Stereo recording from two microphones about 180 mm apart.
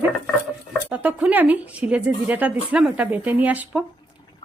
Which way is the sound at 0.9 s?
5° right (ahead or behind).